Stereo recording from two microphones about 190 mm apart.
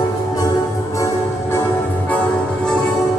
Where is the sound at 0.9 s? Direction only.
15° left (ahead or behind).